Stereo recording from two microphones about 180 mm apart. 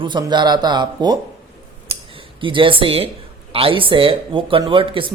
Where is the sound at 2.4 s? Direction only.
30° right (ahead or behind).